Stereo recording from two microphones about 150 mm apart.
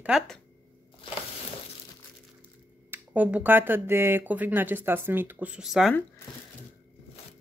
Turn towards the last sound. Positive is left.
turn(degrees=0)  # may be behind; listen again after turning